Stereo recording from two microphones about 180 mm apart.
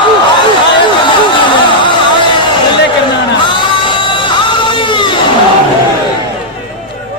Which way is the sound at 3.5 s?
25° left (ahead or behind).